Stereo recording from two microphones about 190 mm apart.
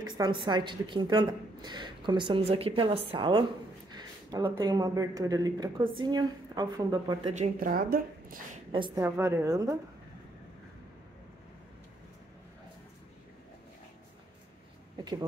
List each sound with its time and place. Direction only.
0.0 s a woman's voice: 25° right (ahead or behind)
7.2 s speech: 35° right (ahead or behind)
7.5 s speech: 50° right (ahead or behind)
8.7 s a woman's voice: 25° right (ahead or behind)
9.0 s a woman's voice: 10° right (ahead or behind)